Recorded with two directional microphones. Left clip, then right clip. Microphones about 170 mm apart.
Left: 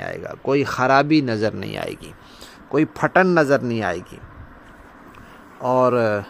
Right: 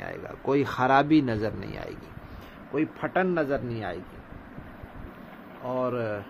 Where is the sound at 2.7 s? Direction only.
85° left.